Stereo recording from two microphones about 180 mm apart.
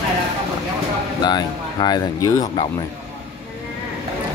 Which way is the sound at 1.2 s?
25° left (ahead or behind).